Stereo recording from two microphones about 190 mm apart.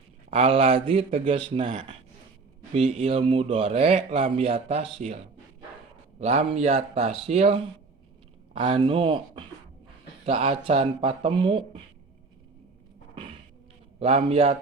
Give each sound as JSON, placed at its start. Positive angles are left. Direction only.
{"t": 0.3, "sound": "a man's voice", "side_deg": -30}
{"t": 14.0, "sound": "a man's voice", "side_deg": -30}